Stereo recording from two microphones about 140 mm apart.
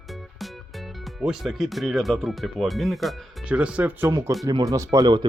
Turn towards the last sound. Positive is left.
turn(degrees=-30)  # may be behind; listen again after turning